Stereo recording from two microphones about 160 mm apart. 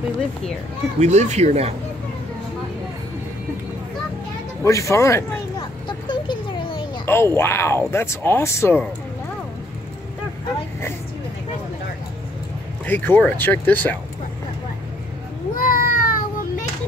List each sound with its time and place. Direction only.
0.9 s speech: 45° right (ahead or behind)
4.6 s speech: 20° left (ahead or behind)
5.9 s a sound: 30° left (ahead or behind)
7.1 s speech: 15° left (ahead or behind)
12.8 s speech: 10° left (ahead or behind)
15.5 s a sound: 65° left (ahead or behind)